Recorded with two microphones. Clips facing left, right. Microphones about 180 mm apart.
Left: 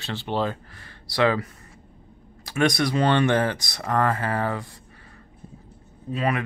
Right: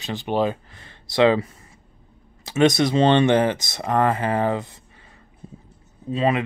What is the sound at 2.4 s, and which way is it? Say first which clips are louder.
Speech: right 5 dB; 20° right (ahead or behind).